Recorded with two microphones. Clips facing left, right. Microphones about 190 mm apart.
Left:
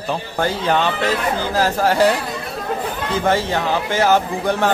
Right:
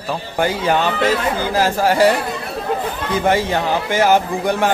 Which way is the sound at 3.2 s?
10° right (ahead or behind).